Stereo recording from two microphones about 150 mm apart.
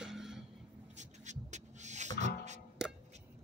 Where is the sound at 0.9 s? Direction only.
50° right (ahead or behind).